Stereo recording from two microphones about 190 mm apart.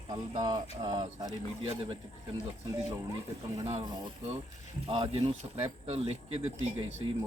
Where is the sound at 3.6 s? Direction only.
30° right (ahead or behind).